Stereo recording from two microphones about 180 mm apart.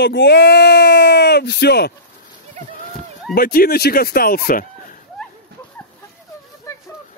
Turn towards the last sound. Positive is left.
turn(degrees=15)  # may be behind; listen again after turning